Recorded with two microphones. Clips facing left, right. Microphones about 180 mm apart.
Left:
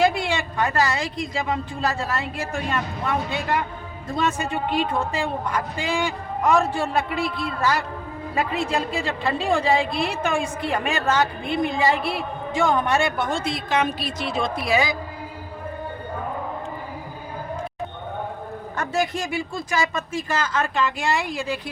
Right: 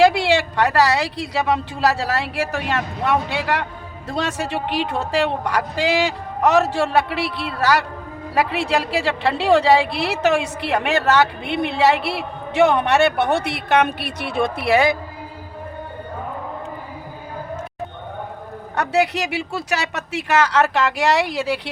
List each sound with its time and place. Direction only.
0.0 s a woman's voice: 75° right (ahead or behind)
18.8 s a woman's voice: 70° right (ahead or behind)